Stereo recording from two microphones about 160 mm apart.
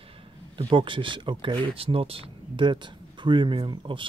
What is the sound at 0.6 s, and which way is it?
Speech, 30° right (ahead or behind).